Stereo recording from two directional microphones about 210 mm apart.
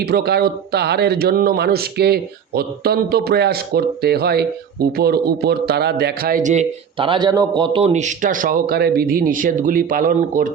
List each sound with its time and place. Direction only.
0.0 s speech: 50° right (ahead or behind)